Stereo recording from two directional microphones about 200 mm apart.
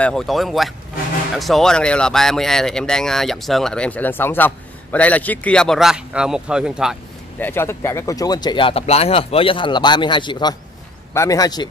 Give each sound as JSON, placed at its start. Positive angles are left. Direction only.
{"t": 0.0, "sound": "speech", "side_deg": 5}
{"t": 7.3, "sound": "speech", "side_deg": 10}